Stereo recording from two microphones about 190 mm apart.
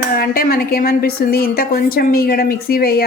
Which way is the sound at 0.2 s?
50° left (ahead or behind).